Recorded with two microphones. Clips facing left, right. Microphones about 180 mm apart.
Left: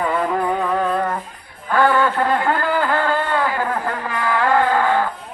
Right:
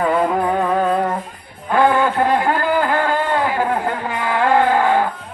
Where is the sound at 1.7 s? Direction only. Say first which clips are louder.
Right 1 dB; 20° right (ahead or behind).